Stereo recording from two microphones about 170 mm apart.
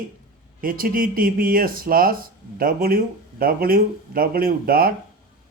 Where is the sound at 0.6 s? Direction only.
55° right (ahead or behind).